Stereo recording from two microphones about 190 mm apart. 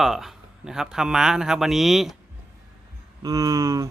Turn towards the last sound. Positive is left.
turn(degrees=-15)  # may be behind; listen again after turning